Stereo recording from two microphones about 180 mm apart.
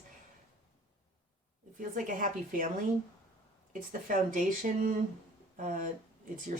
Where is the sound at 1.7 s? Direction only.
45° right (ahead or behind).